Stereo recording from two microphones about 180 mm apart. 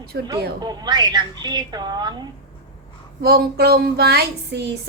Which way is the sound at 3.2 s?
60° right (ahead or behind).